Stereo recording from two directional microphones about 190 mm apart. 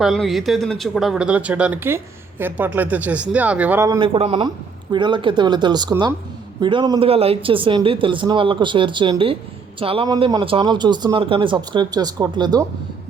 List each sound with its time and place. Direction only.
0.0 s speech: centre (ahead or behind); by 12.6 s 20° right (ahead or behind)